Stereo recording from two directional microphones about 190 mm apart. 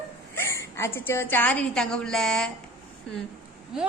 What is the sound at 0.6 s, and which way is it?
A woman's voice, 15° left (ahead or behind).